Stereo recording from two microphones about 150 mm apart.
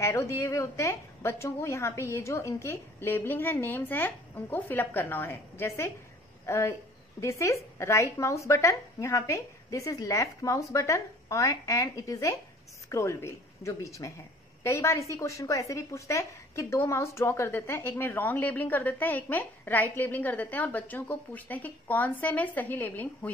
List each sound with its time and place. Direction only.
0.0 s a woman's voice: 20° left (ahead or behind)